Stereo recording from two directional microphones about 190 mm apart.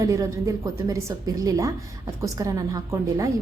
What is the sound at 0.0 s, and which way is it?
A woman's voice, 15° right (ahead or behind).